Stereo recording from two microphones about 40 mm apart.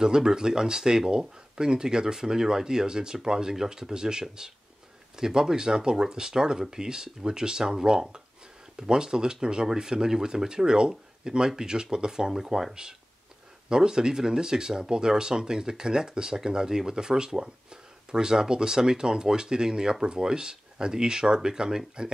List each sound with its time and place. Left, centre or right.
0.0 s speech: centre